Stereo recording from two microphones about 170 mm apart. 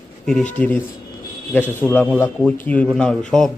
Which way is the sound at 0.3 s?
5° left (ahead or behind).